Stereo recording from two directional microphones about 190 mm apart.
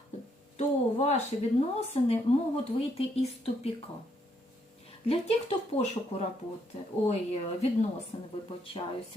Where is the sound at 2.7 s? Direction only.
30° left (ahead or behind).